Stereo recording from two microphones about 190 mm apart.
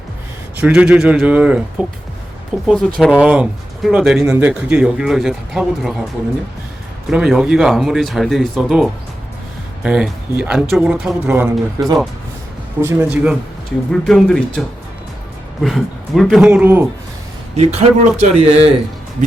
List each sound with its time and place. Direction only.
0.6 s speech: 5° right (ahead or behind)
7.1 s speech: 5° right (ahead or behind)
14.1 s speech: 5° left (ahead or behind)
15.6 s speech: centre (ahead or behind)
17.5 s speech: 35° right (ahead or behind)